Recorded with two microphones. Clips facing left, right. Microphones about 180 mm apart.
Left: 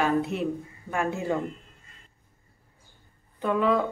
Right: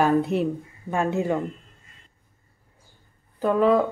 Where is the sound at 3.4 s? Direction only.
40° right (ahead or behind).